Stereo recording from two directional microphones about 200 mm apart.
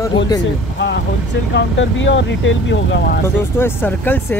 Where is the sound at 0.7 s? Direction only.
60° left (ahead or behind).